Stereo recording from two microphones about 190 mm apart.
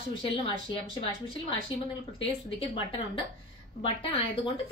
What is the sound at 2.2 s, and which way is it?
A woman's voice, 30° left (ahead or behind).